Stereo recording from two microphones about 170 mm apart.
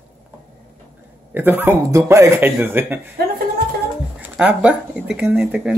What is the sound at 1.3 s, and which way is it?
Speech, 10° right (ahead or behind).